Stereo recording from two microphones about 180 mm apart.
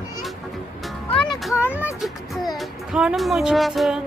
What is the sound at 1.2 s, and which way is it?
Music, centre (ahead or behind).